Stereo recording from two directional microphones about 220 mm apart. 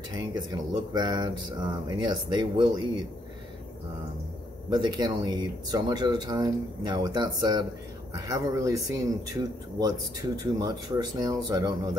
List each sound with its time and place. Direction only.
0.1 s speech: 20° right (ahead or behind)
4.6 s speech: 20° right (ahead or behind)